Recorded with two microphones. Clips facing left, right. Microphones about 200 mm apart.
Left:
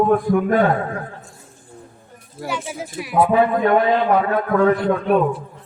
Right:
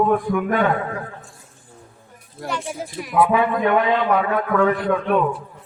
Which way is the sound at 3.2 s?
40° left (ahead or behind).